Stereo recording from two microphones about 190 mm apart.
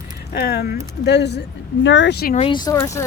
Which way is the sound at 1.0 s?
65° left (ahead or behind).